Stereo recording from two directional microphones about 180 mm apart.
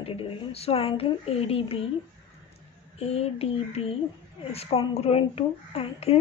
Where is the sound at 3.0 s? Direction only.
35° left (ahead or behind).